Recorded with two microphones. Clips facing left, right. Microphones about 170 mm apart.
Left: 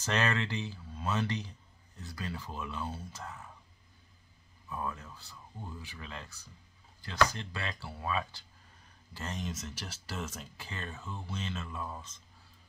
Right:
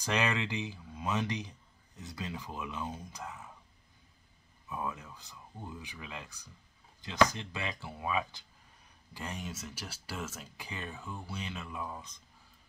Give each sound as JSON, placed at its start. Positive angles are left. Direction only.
{"t": 0.0, "sound": "speech", "side_deg": -15}
{"t": 4.6, "sound": "speech", "side_deg": -15}